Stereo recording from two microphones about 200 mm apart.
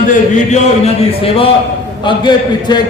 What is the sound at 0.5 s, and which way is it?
A man's voice, 30° left (ahead or behind).